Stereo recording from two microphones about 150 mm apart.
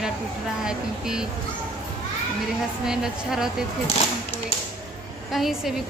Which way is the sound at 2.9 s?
5° right (ahead or behind).